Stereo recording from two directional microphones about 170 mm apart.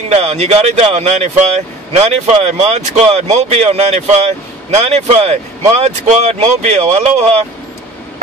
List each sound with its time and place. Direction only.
0.1 s speech: 40° right (ahead or behind)